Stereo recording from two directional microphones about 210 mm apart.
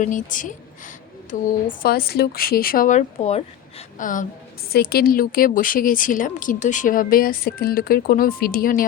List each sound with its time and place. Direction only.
0.0 s speech: 40° left (ahead or behind)